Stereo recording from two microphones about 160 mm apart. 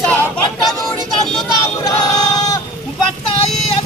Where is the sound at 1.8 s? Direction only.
25° left (ahead or behind).